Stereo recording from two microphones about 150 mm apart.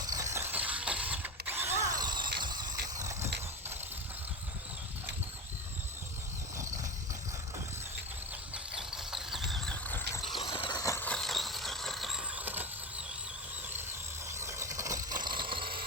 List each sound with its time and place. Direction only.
0.0 s mechanisms: 25° right (ahead or behind)
1.9 s squeal: 30° right (ahead or behind)
2.4 s vehicle: 30° right (ahead or behind)
8.5 s mechanisms: 5° right (ahead or behind)
10.3 s a sound: 30° left (ahead or behind)
11.0 s vehicle: 5° left (ahead or behind)
14.3 s vehicle: 20° right (ahead or behind)
15.2 s engine: 35° right (ahead or behind)